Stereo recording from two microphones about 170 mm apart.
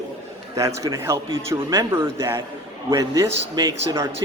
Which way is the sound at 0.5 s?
20° right (ahead or behind).